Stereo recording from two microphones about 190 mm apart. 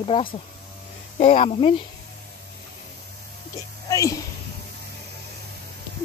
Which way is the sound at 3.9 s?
15° left (ahead or behind).